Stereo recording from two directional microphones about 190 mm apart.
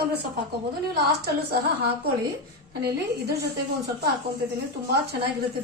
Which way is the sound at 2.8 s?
60° right (ahead or behind).